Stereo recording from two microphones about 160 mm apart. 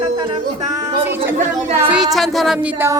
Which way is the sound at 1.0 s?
15° right (ahead or behind).